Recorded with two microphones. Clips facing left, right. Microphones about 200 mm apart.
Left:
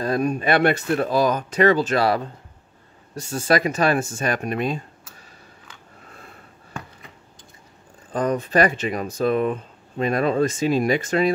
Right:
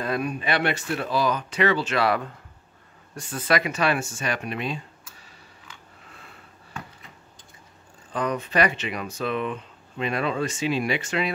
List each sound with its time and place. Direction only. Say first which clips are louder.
0.0 s speech: left 5 dB; 40° left (ahead or behind)
6.1 s sniff: left 4 dB; 45° left (ahead or behind)
8.1 s speech: left 5 dB; 40° left (ahead or behind)